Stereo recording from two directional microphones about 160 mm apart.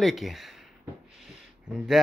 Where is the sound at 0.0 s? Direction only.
Centre (ahead or behind).